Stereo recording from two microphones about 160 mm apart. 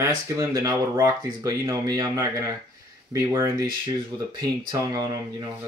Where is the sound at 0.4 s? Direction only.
20° right (ahead or behind).